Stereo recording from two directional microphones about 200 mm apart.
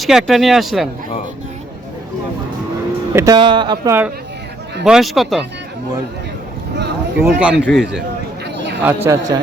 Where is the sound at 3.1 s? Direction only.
15° right (ahead or behind).